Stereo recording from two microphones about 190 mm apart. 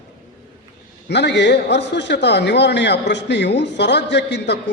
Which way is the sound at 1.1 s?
65° left (ahead or behind).